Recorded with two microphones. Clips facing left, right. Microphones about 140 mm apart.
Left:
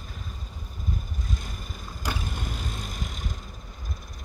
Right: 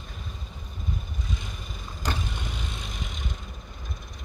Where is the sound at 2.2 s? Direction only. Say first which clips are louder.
Left 1 dB; 45° left (ahead or behind).